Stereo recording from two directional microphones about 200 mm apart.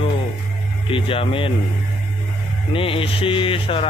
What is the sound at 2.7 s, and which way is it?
Speech, 25° left (ahead or behind).